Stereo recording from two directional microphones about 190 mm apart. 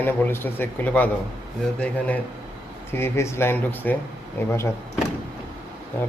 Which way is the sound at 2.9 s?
15° left (ahead or behind).